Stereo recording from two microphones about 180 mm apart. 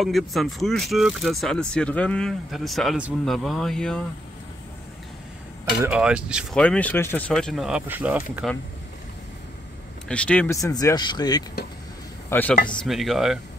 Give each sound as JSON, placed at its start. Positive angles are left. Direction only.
{"t": 0.0, "sound": "speech", "side_deg": 0}
{"t": 5.9, "sound": "speech", "side_deg": -5}
{"t": 6.6, "sound": "speech", "side_deg": 10}
{"t": 10.0, "sound": "speech", "side_deg": 5}
{"t": 12.3, "sound": "speech", "side_deg": 10}